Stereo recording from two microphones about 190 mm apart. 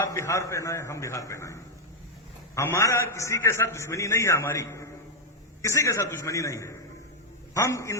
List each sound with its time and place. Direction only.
0.0 s a man's voice: 15° left (ahead or behind)